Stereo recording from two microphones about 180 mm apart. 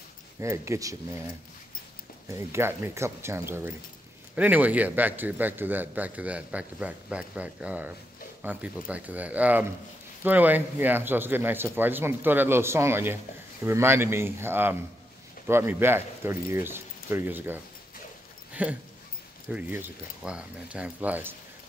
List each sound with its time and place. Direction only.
0.4 s speech: 15° right (ahead or behind)
2.3 s speech: 15° right (ahead or behind)
18.5 s a sound: 10° right (ahead or behind)
19.5 s speech: 10° right (ahead or behind)